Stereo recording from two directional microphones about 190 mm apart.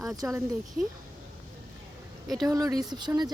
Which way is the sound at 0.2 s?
10° right (ahead or behind).